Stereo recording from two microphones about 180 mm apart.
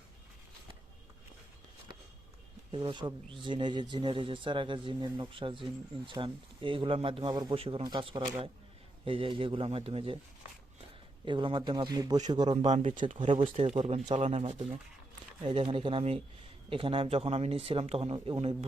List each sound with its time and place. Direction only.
2.7 s speech: 25° right (ahead or behind)
11.3 s speech: 25° right (ahead or behind)
12.6 s speech: 40° right (ahead or behind)
13.1 s speech: 30° right (ahead or behind)